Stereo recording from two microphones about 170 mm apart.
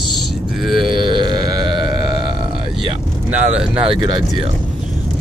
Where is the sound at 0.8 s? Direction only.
25° right (ahead or behind).